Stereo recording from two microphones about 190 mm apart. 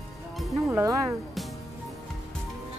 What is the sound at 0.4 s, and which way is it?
Music, 10° right (ahead or behind).